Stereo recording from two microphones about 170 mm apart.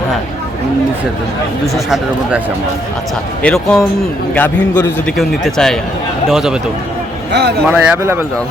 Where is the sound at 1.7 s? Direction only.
Centre (ahead or behind).